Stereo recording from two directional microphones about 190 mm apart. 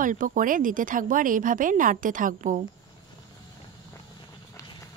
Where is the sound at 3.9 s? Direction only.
20° left (ahead or behind).